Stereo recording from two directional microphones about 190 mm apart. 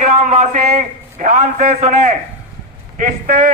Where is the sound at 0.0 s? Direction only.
35° right (ahead or behind).